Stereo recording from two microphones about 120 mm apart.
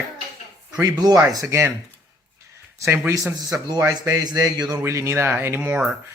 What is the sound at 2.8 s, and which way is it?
Speech, 20° right (ahead or behind).